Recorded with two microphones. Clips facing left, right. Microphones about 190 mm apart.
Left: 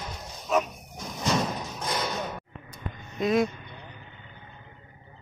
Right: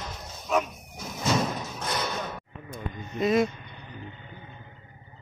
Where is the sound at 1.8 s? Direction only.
10° left (ahead or behind).